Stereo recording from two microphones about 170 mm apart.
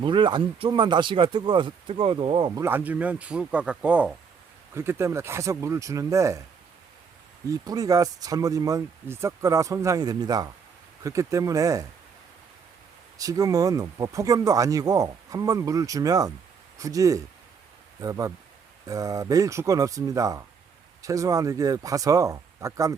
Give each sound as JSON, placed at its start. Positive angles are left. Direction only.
{"t": 0.0, "sound": "speech", "side_deg": -30}
{"t": 2.6, "sound": "speech", "side_deg": -10}
{"t": 7.4, "sound": "speech", "side_deg": -20}
{"t": 13.1, "sound": "speech", "side_deg": -20}